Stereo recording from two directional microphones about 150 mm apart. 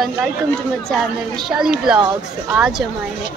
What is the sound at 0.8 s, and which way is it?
A woman's voice, centre (ahead or behind).